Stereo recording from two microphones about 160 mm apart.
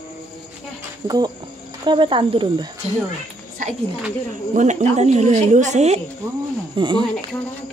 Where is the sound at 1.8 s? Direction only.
30° right (ahead or behind).